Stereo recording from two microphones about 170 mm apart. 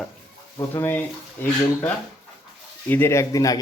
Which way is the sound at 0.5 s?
15° left (ahead or behind).